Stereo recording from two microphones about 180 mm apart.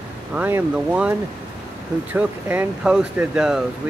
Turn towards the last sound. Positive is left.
turn(degrees=-5)  # may be behind; listen again after turning